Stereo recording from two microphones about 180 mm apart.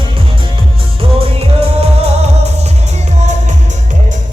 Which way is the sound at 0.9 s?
30° right (ahead or behind).